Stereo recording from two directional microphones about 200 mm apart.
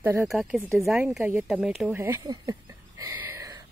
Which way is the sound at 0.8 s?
Centre (ahead or behind).